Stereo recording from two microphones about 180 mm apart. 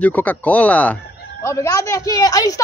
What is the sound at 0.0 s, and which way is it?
A woman's voice, 10° left (ahead or behind).